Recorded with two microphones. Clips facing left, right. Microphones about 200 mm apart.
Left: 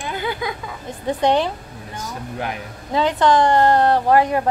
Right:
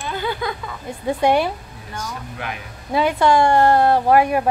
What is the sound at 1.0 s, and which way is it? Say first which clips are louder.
Speech: right 1 dB; 10° right (ahead or behind).